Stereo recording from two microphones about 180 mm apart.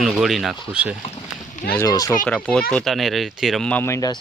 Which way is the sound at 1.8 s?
20° left (ahead or behind).